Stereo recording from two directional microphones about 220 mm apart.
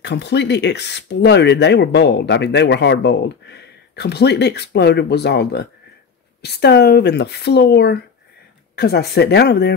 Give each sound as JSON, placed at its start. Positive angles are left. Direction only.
{"t": 0.0, "sound": "speech", "side_deg": 50}